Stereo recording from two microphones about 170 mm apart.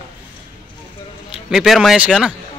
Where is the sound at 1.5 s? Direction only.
Centre (ahead or behind).